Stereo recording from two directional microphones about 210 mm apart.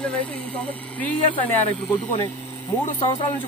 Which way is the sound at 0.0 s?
5° left (ahead or behind).